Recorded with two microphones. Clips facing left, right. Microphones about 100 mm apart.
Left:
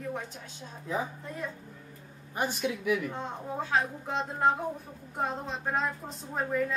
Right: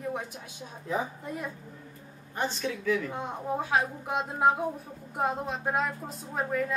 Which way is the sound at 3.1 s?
10° right (ahead or behind).